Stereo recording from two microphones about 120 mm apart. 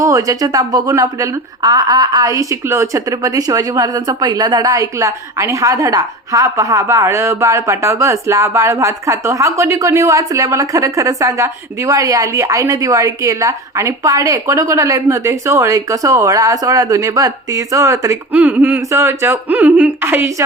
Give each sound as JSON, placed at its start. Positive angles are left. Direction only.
{"t": 0.0, "sound": "speech", "side_deg": -30}
{"t": 18.3, "sound": "speech", "side_deg": -15}